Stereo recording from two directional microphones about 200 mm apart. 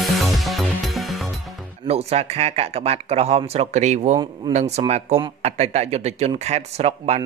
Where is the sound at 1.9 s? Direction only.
30° right (ahead or behind).